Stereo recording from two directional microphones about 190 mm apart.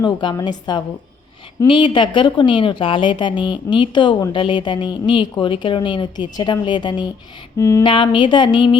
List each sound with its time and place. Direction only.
0.0 s a woman's voice: 25° left (ahead or behind)
7.6 s a sound: 15° left (ahead or behind)
7.9 s a woman's voice: 25° left (ahead or behind)